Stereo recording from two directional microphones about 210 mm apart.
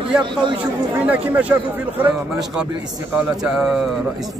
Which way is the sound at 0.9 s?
5° right (ahead or behind).